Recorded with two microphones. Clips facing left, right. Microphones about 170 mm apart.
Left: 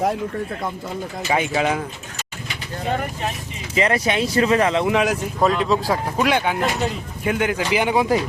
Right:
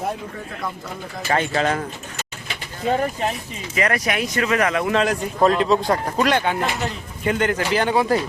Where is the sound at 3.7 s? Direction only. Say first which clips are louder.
Left 2 dB; 25° left (ahead or behind).